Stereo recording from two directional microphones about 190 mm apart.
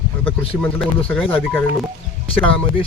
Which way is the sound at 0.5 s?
5° left (ahead or behind).